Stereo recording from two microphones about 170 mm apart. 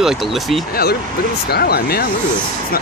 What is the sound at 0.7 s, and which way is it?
Speech, 65° left (ahead or behind).